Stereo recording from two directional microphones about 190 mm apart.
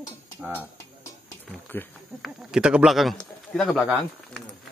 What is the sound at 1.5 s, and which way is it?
Speech, 5° left (ahead or behind).